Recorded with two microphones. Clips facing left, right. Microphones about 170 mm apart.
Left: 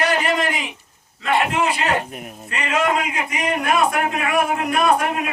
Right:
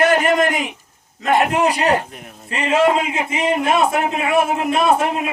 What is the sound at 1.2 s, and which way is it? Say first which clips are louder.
A man's voice: right 4 dB; 45° right (ahead or behind).